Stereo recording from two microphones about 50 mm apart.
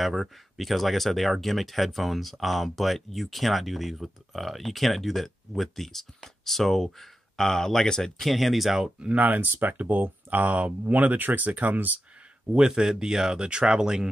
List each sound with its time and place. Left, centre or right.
0.0 s speech: centre
9.0 s speech: right
12.4 s speech: centre